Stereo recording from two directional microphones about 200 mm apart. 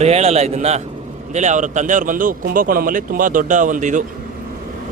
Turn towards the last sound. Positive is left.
turn(degrees=-40)  # may be behind; listen again after turning